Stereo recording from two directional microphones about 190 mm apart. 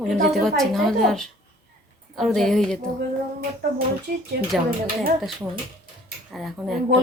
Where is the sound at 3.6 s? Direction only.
55° right (ahead or behind).